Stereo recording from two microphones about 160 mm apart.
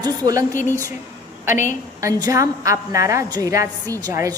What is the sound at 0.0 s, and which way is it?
Speech, 25° right (ahead or behind).